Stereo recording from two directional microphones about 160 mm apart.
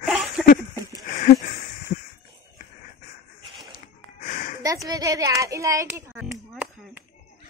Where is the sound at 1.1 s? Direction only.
60° left (ahead or behind).